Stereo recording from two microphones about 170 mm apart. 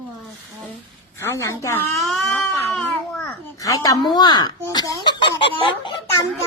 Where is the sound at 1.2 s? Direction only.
15° left (ahead or behind).